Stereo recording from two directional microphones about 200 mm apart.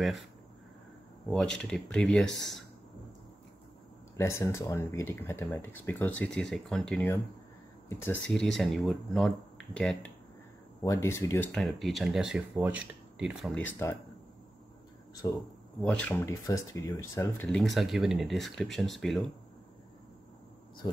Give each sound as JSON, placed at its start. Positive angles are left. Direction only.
{"t": 1.3, "sound": "speech", "side_deg": 5}
{"t": 4.2, "sound": "speech", "side_deg": 15}
{"t": 10.8, "sound": "speech", "side_deg": 15}
{"t": 11.5, "sound": "speech", "side_deg": 0}
{"t": 15.2, "sound": "speech", "side_deg": 20}
{"t": 15.9, "sound": "speech", "side_deg": 5}
{"t": 17.5, "sound": "speech", "side_deg": 0}
{"t": 20.8, "sound": "speech", "side_deg": 20}